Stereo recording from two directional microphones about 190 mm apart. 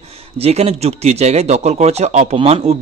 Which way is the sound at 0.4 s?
30° right (ahead or behind).